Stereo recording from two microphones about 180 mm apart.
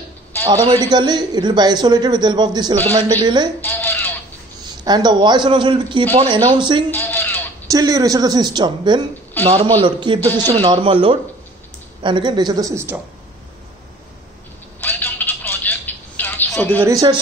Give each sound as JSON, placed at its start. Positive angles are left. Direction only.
{"t": 0.5, "sound": "a man's voice", "side_deg": -20}
{"t": 3.6, "sound": "a sound", "side_deg": 10}
{"t": 4.8, "sound": "a man's voice", "side_deg": -25}
{"t": 6.9, "sound": "a sound", "side_deg": 10}
{"t": 7.7, "sound": "a man's voice", "side_deg": -20}
{"t": 14.8, "sound": "telephone", "side_deg": 10}
{"t": 16.8, "sound": "a man's voice", "side_deg": -20}